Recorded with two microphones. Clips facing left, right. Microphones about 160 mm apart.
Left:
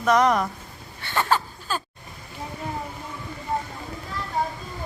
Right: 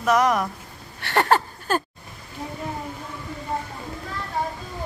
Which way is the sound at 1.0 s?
60° right (ahead or behind).